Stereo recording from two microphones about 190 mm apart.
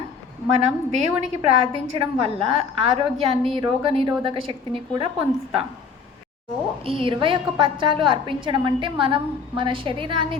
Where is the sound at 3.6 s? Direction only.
30° right (ahead or behind).